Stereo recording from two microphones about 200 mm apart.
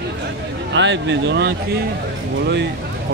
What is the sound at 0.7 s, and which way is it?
Speech, 65° right (ahead or behind).